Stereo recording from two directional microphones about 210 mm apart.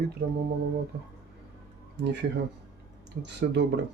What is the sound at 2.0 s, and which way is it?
Speech, 55° right (ahead or behind).